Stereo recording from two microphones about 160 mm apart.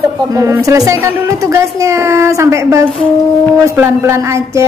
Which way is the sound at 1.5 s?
15° right (ahead or behind).